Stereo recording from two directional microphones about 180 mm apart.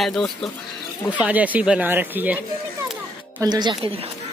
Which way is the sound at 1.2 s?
10° right (ahead or behind).